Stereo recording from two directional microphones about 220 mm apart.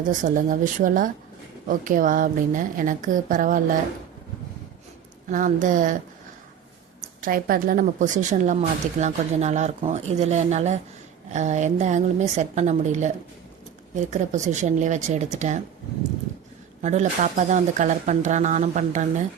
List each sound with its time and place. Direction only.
0.0 s speech: 35° right (ahead or behind)
5.3 s speech: 35° right (ahead or behind)
7.2 s speech: 40° right (ahead or behind)
16.8 s speech: 30° right (ahead or behind)